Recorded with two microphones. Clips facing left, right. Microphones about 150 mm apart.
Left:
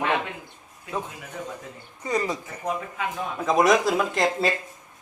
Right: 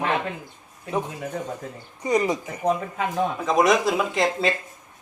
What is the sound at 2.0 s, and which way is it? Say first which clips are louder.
Speech: right 4 dB; 20° right (ahead or behind).